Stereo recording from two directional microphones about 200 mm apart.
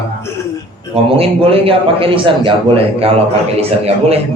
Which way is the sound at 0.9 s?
30° right (ahead or behind).